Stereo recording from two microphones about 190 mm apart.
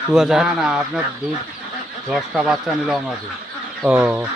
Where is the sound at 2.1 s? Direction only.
Centre (ahead or behind).